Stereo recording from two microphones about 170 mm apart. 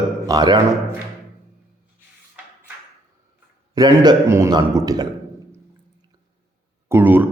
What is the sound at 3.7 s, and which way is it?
A man's voice, 25° right (ahead or behind).